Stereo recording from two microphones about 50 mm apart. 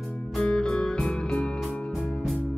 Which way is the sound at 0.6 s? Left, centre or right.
Centre.